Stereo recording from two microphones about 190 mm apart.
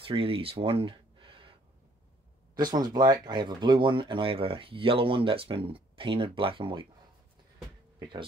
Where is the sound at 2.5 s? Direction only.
20° right (ahead or behind).